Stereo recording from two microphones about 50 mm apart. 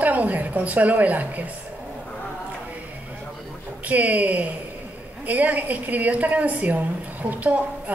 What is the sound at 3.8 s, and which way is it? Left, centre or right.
A woman's voice, right.